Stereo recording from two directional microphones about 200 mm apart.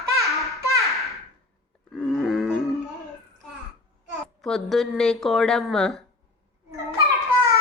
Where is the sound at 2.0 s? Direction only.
Centre (ahead or behind).